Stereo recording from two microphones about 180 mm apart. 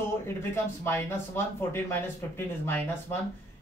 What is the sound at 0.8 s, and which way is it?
Speech, 15° left (ahead or behind).